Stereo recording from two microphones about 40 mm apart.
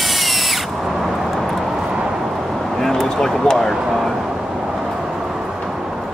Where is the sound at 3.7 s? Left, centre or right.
Centre.